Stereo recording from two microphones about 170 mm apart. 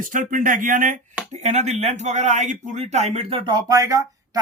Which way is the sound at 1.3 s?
40° right (ahead or behind).